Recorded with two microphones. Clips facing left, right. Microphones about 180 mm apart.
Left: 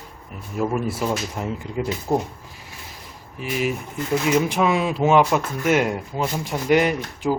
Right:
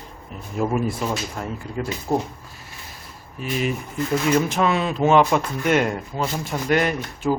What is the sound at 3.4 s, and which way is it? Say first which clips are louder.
Speech: even; 10° left (ahead or behind).